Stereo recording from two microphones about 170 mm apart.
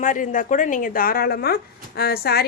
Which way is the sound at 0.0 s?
50° left (ahead or behind).